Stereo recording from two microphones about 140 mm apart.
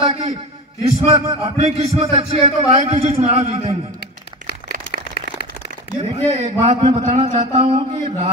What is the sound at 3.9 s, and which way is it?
Crumpling, 65° right (ahead or behind).